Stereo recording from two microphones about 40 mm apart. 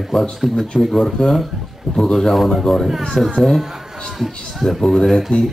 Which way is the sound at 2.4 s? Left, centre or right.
Centre.